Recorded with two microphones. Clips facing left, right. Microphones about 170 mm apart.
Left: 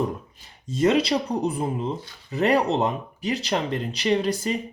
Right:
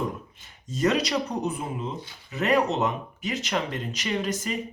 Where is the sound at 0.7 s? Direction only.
30° left (ahead or behind).